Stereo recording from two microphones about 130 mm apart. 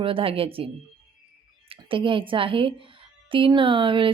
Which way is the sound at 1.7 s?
40° right (ahead or behind).